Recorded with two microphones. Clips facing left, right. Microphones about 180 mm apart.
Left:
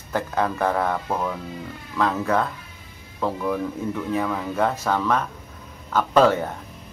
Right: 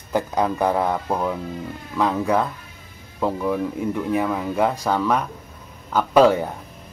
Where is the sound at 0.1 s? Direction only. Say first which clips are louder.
Right 3 dB; 15° right (ahead or behind).